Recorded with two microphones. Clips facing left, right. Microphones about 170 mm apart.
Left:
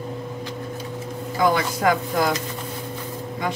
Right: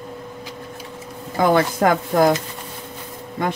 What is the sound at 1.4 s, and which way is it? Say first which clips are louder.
Speech: right 4 dB; 50° right (ahead or behind).